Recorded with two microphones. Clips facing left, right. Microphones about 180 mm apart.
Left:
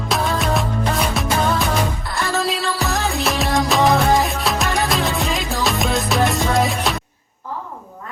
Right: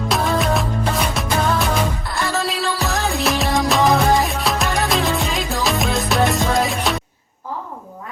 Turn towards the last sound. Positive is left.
turn(degrees=0)  # may be behind; listen again after turning